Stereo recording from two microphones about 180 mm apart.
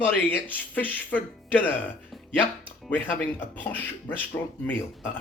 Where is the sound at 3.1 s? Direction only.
10° left (ahead or behind).